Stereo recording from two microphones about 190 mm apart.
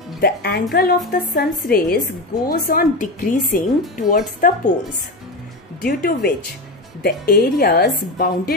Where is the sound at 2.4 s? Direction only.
50° left (ahead or behind).